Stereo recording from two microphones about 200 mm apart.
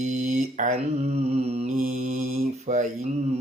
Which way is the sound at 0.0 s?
35° right (ahead or behind).